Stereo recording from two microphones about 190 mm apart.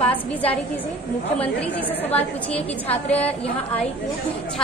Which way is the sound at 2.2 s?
30° left (ahead or behind).